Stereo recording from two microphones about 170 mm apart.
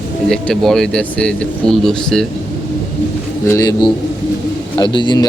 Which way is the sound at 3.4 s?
20° left (ahead or behind).